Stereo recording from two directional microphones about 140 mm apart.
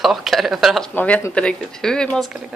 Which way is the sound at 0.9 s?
15° left (ahead or behind).